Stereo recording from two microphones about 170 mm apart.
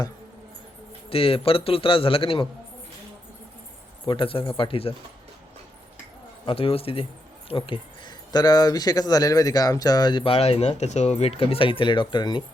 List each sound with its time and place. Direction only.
1.1 s a man's voice: 30° left (ahead or behind)
4.0 s a man's voice: 30° left (ahead or behind)
6.4 s speech: 30° left (ahead or behind)